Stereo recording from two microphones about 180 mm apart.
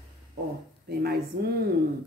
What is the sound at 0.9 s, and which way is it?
Speech, 60° right (ahead or behind).